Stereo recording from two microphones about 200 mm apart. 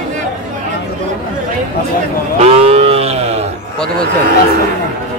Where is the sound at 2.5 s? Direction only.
30° right (ahead or behind).